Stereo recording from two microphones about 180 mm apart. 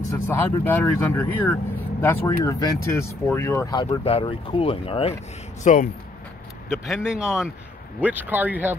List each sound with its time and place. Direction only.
0.3 s speech: 10° left (ahead or behind); by 5.1 s 30° left (ahead or behind)
5.6 s speech: 45° left (ahead or behind)
6.9 s speech: 5° right (ahead or behind)